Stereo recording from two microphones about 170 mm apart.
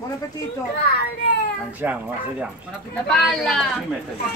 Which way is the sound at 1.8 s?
10° right (ahead or behind).